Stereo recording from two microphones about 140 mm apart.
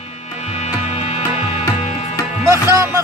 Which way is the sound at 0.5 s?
50° left (ahead or behind).